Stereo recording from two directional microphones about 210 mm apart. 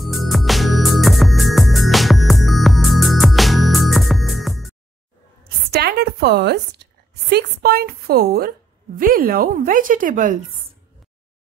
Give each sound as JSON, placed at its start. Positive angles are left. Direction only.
{"t": 0.0, "sound": "music", "side_deg": 0}
{"t": 5.7, "sound": "a sound", "side_deg": -50}
{"t": 7.2, "sound": "a woman's voice", "side_deg": -50}